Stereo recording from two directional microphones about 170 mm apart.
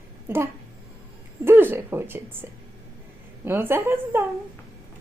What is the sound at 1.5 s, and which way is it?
Speech, 10° right (ahead or behind).